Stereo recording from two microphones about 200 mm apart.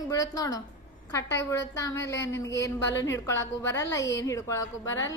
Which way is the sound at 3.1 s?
15° left (ahead or behind).